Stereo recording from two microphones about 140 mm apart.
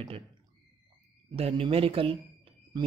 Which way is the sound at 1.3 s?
40° right (ahead or behind).